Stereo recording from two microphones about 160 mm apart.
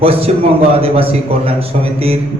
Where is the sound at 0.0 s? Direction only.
35° right (ahead or behind).